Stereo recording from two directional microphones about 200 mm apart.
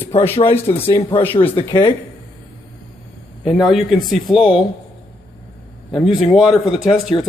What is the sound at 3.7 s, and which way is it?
Speech, centre (ahead or behind).